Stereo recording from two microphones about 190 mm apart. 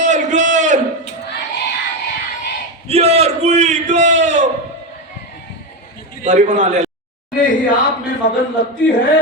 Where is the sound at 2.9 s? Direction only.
35° right (ahead or behind).